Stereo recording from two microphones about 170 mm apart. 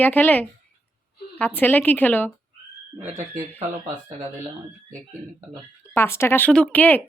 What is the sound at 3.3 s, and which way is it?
Speech, 40° right (ahead or behind).